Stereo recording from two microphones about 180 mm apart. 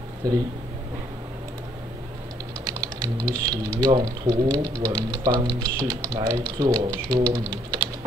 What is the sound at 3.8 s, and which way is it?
Speech, 20° right (ahead or behind).